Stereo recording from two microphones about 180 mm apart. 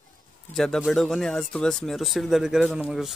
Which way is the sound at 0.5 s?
Centre (ahead or behind).